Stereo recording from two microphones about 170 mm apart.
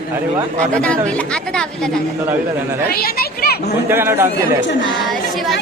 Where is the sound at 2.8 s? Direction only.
65° left (ahead or behind).